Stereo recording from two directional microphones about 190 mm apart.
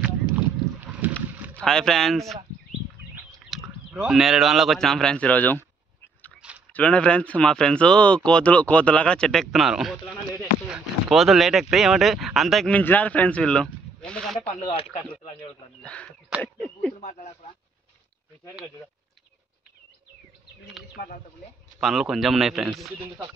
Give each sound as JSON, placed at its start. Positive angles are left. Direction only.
{"t": 0.7, "sound": "boat", "side_deg": -10}
{"t": 1.5, "sound": "speech", "side_deg": 5}
{"t": 3.5, "sound": "a sound", "side_deg": 0}
{"t": 3.9, "sound": "speech", "side_deg": 0}
{"t": 6.7, "sound": "speech", "side_deg": 5}
{"t": 14.6, "sound": "speech", "side_deg": 30}
{"t": 15.8, "sound": "speech", "side_deg": 5}
{"t": 17.0, "sound": "speech", "side_deg": 40}
{"t": 21.7, "sound": "speech", "side_deg": 0}